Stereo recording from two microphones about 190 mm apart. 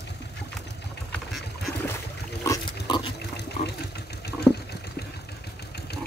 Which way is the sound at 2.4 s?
20° left (ahead or behind).